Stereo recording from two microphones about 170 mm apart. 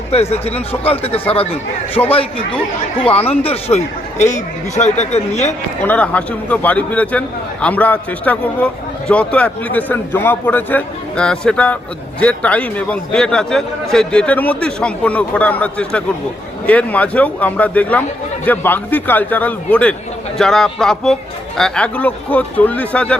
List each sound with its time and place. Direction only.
0.1 s speech: 35° left (ahead or behind)
2.0 s a man's voice: 15° left (ahead or behind)
3.0 s speech: 35° left (ahead or behind)
5.8 s a man's voice: 10° left (ahead or behind)